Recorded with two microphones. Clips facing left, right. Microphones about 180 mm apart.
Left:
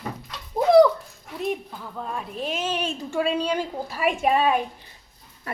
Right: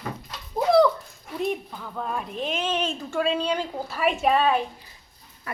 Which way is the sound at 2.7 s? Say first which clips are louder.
Even; 10° left (ahead or behind).